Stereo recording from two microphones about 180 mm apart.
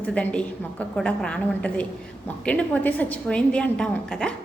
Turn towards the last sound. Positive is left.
turn(degrees=5)  # may be behind; listen again after turning